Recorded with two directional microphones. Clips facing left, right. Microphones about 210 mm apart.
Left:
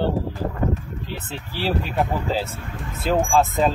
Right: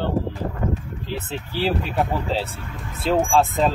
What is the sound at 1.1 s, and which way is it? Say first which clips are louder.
Speech: right 6 dB; centre (ahead or behind).